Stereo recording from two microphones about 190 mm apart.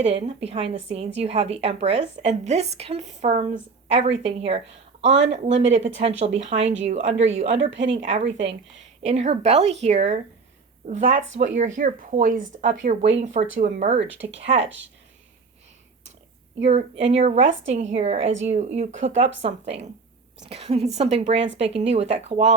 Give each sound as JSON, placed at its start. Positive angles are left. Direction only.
{"t": 0.0, "sound": "a woman's voice", "side_deg": -30}
{"t": 14.1, "sound": "speech", "side_deg": -75}
{"t": 14.4, "sound": "a woman's voice", "side_deg": -30}
{"t": 16.6, "sound": "a woman's voice", "side_deg": -35}
{"t": 21.3, "sound": "speech", "side_deg": -70}
{"t": 21.6, "sound": "a woman's voice", "side_deg": -30}